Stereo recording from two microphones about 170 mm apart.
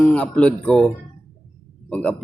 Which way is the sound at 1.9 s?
5° left (ahead or behind).